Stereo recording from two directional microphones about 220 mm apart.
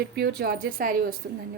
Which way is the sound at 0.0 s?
45° right (ahead or behind).